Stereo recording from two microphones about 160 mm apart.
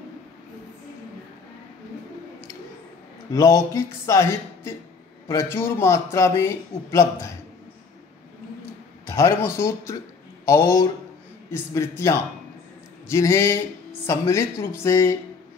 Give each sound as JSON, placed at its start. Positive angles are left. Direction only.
{"t": 3.3, "sound": "a man's voice", "side_deg": 20}
{"t": 9.0, "sound": "a man's voice", "side_deg": 15}